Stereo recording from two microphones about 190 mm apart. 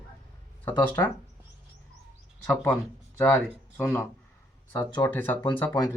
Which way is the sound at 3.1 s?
10° left (ahead or behind).